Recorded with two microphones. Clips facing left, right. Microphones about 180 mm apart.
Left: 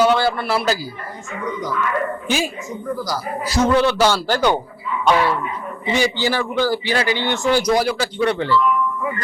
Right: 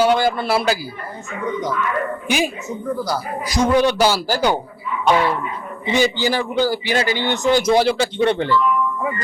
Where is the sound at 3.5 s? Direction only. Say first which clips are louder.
Even; 15° right (ahead or behind).